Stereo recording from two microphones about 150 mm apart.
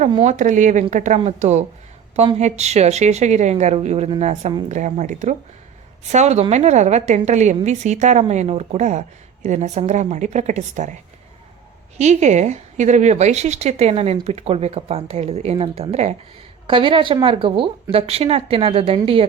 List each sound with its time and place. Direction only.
0.2 s a woman's voice: 55° right (ahead or behind)
11.9 s a woman's voice: 50° right (ahead or behind)
16.6 s speech: 35° right (ahead or behind)